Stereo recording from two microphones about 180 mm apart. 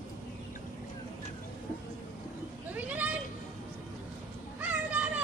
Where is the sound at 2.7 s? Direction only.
10° right (ahead or behind).